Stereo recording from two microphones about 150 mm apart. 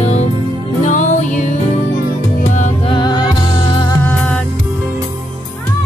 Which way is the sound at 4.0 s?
10° left (ahead or behind).